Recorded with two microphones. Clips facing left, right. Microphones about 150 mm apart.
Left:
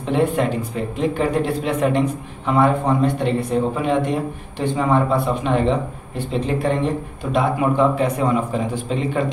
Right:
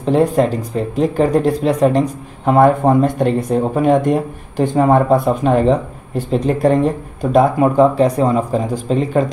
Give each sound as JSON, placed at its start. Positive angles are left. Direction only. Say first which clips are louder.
{"t": 0.0, "sound": "speech", "louder": "right 5 dB", "side_deg": -40}